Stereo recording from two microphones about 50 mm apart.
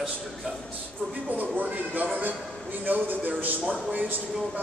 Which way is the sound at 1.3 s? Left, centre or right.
Right.